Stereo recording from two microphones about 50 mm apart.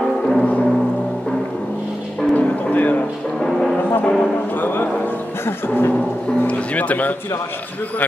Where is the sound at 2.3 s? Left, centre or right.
Left.